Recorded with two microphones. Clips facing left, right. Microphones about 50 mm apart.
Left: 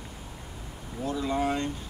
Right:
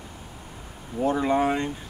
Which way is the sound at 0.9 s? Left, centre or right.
Right.